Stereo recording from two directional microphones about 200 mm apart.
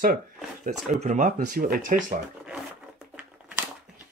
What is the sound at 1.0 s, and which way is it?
Speech, 40° right (ahead or behind).